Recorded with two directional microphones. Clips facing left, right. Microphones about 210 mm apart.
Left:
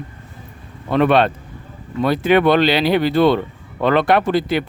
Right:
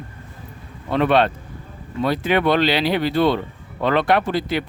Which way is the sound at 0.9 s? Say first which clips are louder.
Left 3 dB; 55° left (ahead or behind).